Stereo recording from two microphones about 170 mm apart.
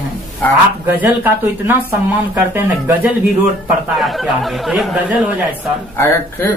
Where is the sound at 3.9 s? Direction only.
Centre (ahead or behind).